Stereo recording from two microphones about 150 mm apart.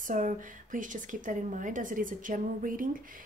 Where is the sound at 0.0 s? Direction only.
60° right (ahead or behind).